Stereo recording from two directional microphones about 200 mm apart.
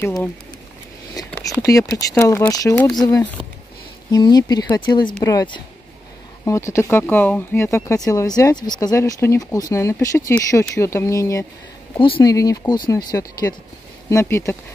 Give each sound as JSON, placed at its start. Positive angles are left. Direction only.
{"t": 0.0, "sound": "speech", "side_deg": 10}
{"t": 1.1, "sound": "a sound", "side_deg": 15}
{"t": 1.9, "sound": "speech", "side_deg": 15}